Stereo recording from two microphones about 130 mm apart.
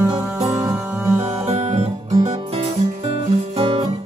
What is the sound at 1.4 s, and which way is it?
Music, 60° right (ahead or behind).